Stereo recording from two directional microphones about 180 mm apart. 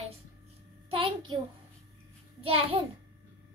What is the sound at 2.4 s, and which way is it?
Child singing, 30° right (ahead or behind).